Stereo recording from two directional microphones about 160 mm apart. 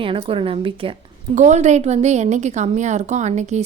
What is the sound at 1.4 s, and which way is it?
A woman's voice, 45° right (ahead or behind).